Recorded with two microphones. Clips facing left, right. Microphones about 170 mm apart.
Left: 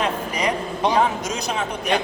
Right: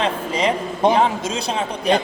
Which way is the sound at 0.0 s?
25° right (ahead or behind).